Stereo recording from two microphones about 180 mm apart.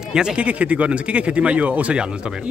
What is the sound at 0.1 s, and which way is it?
Speech, 5° right (ahead or behind).